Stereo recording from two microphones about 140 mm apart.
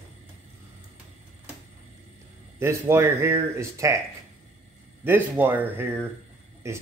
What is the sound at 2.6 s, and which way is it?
Speech, 20° right (ahead or behind).